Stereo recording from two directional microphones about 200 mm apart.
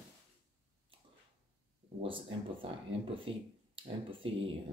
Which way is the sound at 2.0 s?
25° right (ahead or behind).